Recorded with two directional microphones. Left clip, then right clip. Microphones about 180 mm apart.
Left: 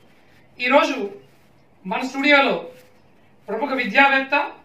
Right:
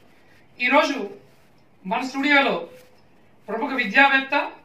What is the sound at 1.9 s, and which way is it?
Speech, 15° left (ahead or behind).